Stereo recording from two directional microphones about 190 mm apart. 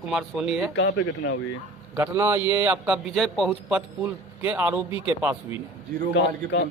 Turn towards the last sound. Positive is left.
turn(degrees=70)  # may be behind; listen again after turning